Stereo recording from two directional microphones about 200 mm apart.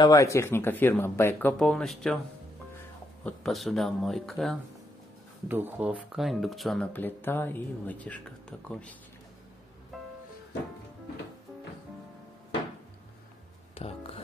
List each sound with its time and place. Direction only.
0.0 s speech: 15° left (ahead or behind)
3.3 s speech: centre (ahead or behind)
9.9 s music: centre (ahead or behind)
13.7 s a sound: 30° left (ahead or behind)